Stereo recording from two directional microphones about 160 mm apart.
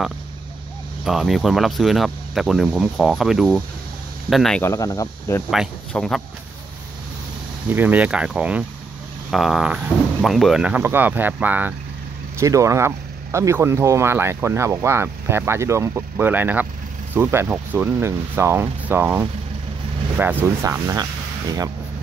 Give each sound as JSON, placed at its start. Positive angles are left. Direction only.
{"t": 1.0, "sound": "speech", "side_deg": 0}
{"t": 4.6, "sound": "speech", "side_deg": 20}
{"t": 5.5, "sound": "speech", "side_deg": 0}
{"t": 7.7, "sound": "speech", "side_deg": -10}